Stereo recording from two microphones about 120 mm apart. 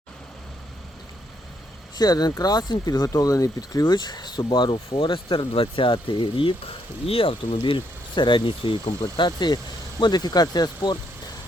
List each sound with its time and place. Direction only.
2.0 s speech: 35° left (ahead or behind)